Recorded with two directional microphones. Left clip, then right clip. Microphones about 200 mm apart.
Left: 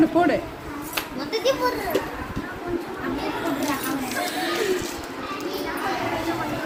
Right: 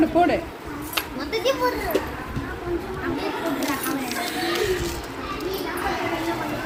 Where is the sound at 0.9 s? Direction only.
15° right (ahead or behind).